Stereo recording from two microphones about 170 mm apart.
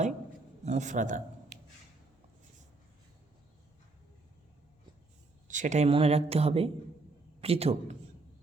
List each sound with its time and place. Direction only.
0.6 s a man's voice: 45° right (ahead or behind)
5.5 s speech: 45° right (ahead or behind)